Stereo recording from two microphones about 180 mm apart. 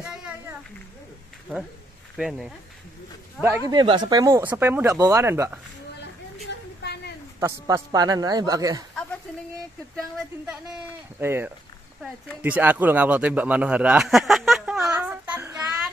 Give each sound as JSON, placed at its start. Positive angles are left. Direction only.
{"t": 2.1, "sound": "speech", "side_deg": -5}
{"t": 3.3, "sound": "speech", "side_deg": -15}
{"t": 3.7, "sound": "speech", "side_deg": -25}
{"t": 7.3, "sound": "a man's voice", "side_deg": -15}
{"t": 10.1, "sound": "speech", "side_deg": -5}